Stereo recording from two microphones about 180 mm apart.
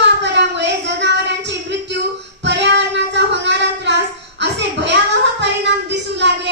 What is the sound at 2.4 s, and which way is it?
Child singing, 75° right (ahead or behind).